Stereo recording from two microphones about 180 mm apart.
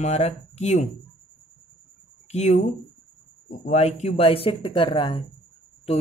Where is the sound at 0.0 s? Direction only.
40° left (ahead or behind).